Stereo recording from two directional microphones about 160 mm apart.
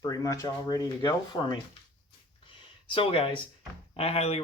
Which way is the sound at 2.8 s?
35° left (ahead or behind).